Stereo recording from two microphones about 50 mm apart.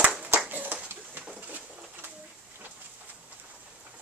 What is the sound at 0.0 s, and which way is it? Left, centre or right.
Clapping, right.